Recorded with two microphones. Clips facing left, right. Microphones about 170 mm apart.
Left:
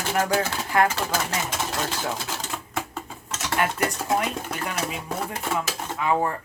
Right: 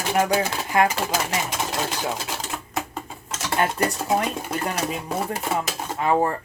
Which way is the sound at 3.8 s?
15° right (ahead or behind).